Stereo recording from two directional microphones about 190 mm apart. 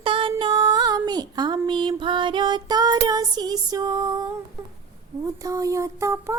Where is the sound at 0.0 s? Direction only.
25° right (ahead or behind).